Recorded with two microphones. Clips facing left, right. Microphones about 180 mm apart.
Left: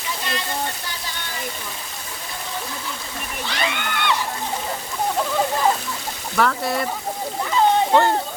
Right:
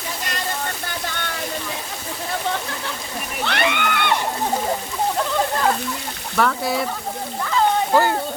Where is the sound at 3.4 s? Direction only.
60° right (ahead or behind).